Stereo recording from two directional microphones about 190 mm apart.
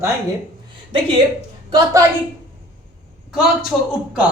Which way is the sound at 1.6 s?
20° right (ahead or behind).